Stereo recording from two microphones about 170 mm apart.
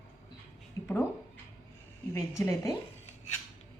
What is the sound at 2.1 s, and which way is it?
Speech, 20° left (ahead or behind).